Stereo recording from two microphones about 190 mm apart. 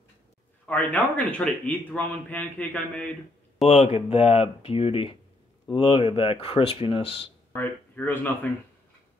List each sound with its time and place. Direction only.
0.7 s a man's voice: 10° left (ahead or behind)
3.6 s speech: 35° left (ahead or behind)
7.5 s a man's voice: 10° left (ahead or behind)